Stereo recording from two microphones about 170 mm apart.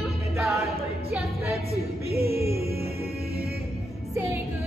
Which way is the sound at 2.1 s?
65° right (ahead or behind).